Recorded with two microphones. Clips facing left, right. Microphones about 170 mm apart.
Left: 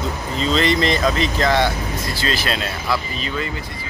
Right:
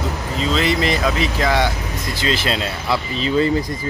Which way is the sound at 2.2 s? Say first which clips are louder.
Right 4 dB; 20° right (ahead or behind).